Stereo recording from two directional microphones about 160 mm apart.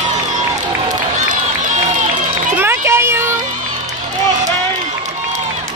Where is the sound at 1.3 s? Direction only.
55° right (ahead or behind).